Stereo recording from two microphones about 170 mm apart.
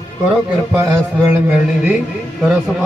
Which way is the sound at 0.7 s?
15° right (ahead or behind).